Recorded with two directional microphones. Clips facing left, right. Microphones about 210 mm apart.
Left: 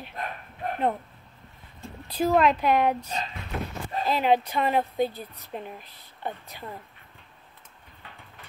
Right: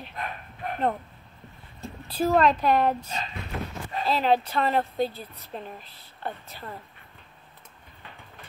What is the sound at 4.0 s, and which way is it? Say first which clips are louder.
Speech: even; 15° left (ahead or behind).